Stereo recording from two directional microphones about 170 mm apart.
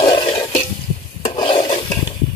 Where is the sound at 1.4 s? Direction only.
30° left (ahead or behind).